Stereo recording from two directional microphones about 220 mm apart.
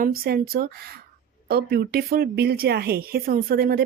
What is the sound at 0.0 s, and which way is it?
Speech, 40° right (ahead or behind).